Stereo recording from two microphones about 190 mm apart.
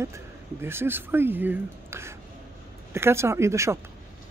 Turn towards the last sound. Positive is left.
turn(degrees=-15)  # may be behind; listen again after turning